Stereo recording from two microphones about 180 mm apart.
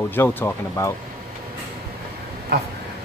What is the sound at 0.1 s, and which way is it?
Speech, 10° left (ahead or behind).